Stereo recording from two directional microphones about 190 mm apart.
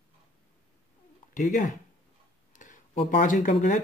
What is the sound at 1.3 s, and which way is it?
Speech, 45° left (ahead or behind).